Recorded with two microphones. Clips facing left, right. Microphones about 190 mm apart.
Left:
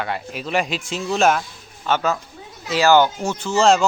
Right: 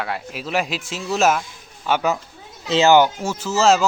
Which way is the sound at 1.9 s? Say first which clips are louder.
Even; 15° right (ahead or behind).